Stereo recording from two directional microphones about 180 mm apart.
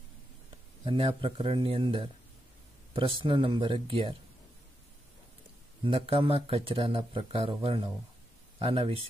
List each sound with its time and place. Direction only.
0.8 s speech: 30° right (ahead or behind)
5.9 s speech: 30° right (ahead or behind)